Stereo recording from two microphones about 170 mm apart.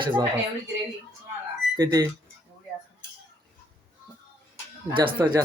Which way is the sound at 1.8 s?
20° right (ahead or behind).